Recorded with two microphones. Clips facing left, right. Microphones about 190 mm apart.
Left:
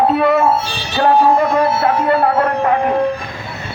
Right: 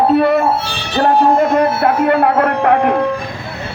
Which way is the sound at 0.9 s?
50° right (ahead or behind).